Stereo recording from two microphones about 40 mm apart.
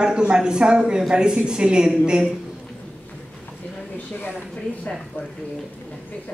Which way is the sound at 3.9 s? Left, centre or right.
Left.